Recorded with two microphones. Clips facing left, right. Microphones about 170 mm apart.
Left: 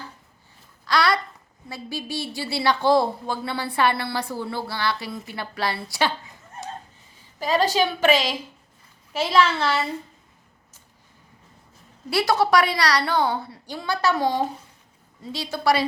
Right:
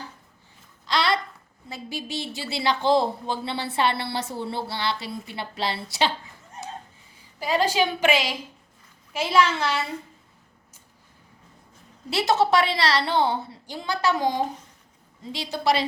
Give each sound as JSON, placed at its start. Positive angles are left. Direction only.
{"t": 0.9, "sound": "a sound", "side_deg": -20}
{"t": 1.7, "sound": "speech", "side_deg": -20}
{"t": 7.3, "sound": "a woman's voice", "side_deg": -15}
{"t": 12.1, "sound": "speech", "side_deg": -25}